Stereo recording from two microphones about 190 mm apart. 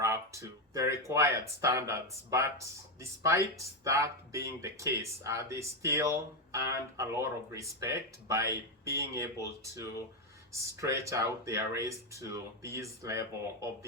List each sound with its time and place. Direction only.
0.0 s speech: 15° right (ahead or behind)
10.5 s speech: 15° right (ahead or behind)